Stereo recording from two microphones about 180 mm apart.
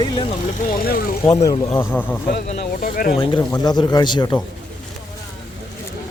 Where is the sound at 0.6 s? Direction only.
55° left (ahead or behind).